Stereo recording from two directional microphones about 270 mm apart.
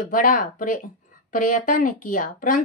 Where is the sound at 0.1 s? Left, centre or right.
Left.